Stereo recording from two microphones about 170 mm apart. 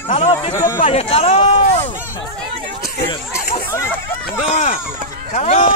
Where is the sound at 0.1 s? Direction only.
30° left (ahead or behind).